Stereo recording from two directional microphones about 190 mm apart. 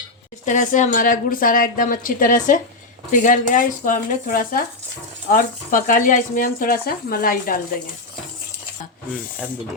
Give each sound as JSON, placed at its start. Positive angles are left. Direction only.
{"t": 0.4, "sound": "speech", "side_deg": 40}